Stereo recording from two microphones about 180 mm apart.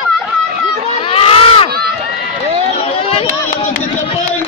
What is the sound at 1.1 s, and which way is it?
Crowd, 30° left (ahead or behind).